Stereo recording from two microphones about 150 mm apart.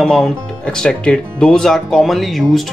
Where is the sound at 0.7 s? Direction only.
5° left (ahead or behind).